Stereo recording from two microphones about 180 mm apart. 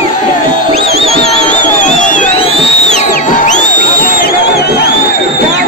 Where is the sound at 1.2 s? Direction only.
35° left (ahead or behind).